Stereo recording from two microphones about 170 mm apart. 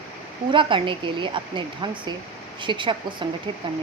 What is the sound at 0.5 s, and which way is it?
A woman's voice, 30° right (ahead or behind).